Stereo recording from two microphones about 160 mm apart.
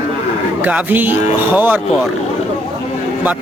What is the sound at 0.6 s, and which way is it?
Speech, 10° right (ahead or behind).